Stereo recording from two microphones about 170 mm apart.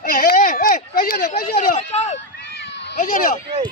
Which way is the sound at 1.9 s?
40° left (ahead or behind).